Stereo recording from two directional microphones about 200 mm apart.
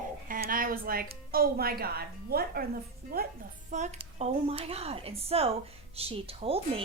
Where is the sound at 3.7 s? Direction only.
35° right (ahead or behind).